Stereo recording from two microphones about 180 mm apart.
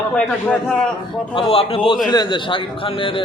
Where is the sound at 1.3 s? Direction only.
30° left (ahead or behind).